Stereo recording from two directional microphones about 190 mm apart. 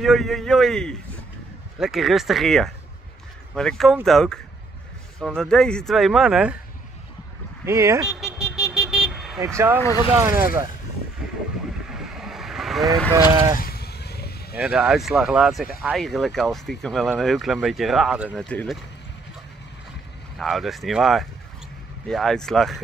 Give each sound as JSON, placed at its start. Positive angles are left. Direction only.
{"t": 0.0, "sound": "speech", "side_deg": 0}
{"t": 7.6, "sound": "speech", "side_deg": -15}
{"t": 8.3, "sound": "vehicle", "side_deg": 15}
{"t": 8.7, "sound": "vehicle", "side_deg": -5}
{"t": 9.8, "sound": "speech", "side_deg": 15}
{"t": 10.1, "sound": "speech", "side_deg": -15}
{"t": 12.0, "sound": "vehicle", "side_deg": 0}
{"t": 13.3, "sound": "speech", "side_deg": -20}
{"t": 13.6, "sound": "vehicle", "side_deg": 55}
{"t": 14.6, "sound": "speech", "side_deg": -5}
{"t": 20.3, "sound": "speech", "side_deg": 0}